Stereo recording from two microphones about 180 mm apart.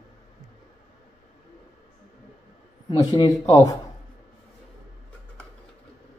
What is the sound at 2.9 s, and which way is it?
Speech, 25° left (ahead or behind).